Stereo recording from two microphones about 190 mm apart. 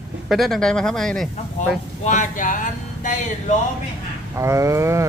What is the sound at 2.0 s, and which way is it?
Speech, 40° left (ahead or behind).